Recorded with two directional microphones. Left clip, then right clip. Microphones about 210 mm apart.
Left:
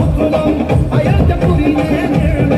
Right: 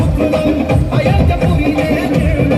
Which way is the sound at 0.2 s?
55° right (ahead or behind).